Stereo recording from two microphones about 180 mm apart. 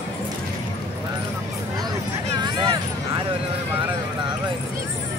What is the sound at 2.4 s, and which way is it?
Vehicle, 25° right (ahead or behind).